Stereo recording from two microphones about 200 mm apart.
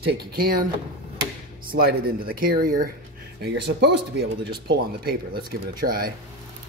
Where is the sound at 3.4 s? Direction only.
55° right (ahead or behind).